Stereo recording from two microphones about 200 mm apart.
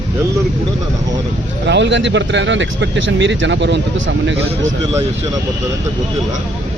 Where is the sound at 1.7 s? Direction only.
60° right (ahead or behind).